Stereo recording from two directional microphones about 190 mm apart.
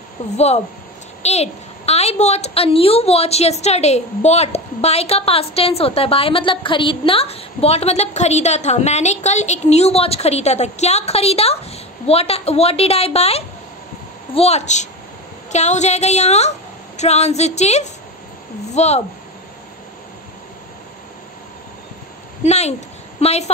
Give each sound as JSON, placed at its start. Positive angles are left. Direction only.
{"t": 1.2, "sound": "a child's voice", "side_deg": 35}
{"t": 22.4, "sound": "a child's voice", "side_deg": 35}